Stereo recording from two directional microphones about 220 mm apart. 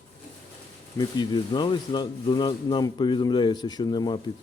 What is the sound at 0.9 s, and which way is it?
A man's voice, 20° left (ahead or behind).